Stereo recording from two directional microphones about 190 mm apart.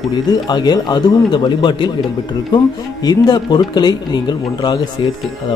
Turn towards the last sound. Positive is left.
turn(degrees=25)  # may be behind; listen again after turning